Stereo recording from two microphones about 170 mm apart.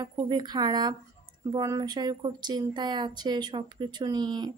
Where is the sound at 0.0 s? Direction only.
25° right (ahead or behind).